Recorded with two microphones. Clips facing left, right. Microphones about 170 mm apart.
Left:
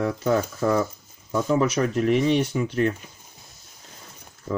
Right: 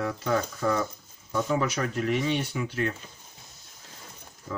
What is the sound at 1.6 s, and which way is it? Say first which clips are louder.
Speech: left 6 dB; 40° left (ahead or behind).